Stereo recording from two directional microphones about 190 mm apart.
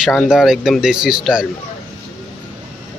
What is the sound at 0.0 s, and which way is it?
Speech, centre (ahead or behind).